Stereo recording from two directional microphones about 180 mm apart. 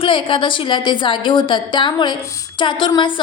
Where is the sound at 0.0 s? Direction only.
30° left (ahead or behind).